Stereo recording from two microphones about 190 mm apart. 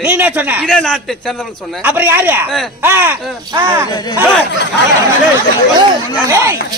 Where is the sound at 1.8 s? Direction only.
10° right (ahead or behind).